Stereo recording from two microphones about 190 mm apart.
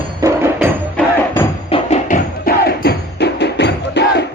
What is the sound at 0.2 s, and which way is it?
Music, 15° right (ahead or behind).